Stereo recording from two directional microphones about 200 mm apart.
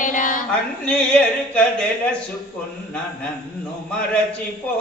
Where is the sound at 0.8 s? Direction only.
5° left (ahead or behind).